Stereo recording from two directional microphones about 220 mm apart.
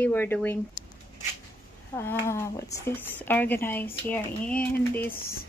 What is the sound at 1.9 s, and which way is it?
Speech, 10° left (ahead or behind).